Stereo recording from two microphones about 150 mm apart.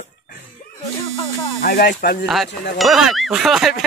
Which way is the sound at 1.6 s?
85° left.